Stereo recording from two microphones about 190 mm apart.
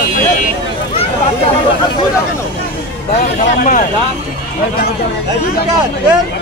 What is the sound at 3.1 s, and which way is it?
Speech, 40° left (ahead or behind).